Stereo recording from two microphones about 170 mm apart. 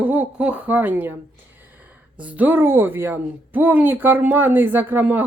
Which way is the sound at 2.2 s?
10° right (ahead or behind).